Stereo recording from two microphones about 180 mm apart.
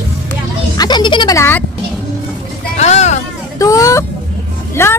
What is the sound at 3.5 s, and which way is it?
Vehicle, 20° left (ahead or behind).